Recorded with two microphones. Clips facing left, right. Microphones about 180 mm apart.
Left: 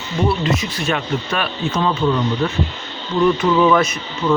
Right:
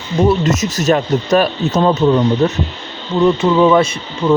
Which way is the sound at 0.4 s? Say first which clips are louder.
Right 6 dB; 45° right (ahead or behind).